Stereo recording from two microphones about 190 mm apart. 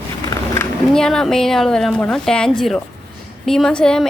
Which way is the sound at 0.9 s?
5° left (ahead or behind).